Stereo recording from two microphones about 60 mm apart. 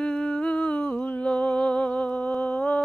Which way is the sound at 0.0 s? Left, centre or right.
Centre.